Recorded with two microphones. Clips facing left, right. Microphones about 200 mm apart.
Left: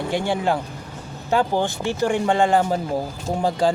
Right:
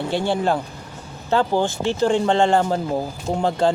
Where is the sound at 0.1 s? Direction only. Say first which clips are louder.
Right 1 dB; 15° left (ahead or behind).